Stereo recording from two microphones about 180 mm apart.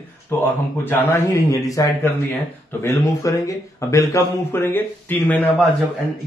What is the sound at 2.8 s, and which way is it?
Speech, 15° left (ahead or behind).